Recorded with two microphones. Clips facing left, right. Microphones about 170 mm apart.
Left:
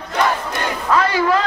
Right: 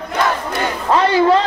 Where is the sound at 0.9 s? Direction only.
25° right (ahead or behind).